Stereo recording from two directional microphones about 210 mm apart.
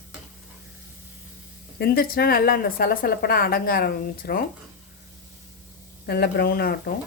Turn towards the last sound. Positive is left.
turn(degrees=45)  # may be behind; listen again after turning